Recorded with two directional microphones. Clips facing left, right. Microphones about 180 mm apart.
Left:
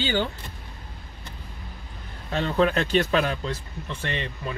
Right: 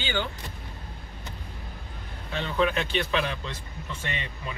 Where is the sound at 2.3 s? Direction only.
40° left (ahead or behind).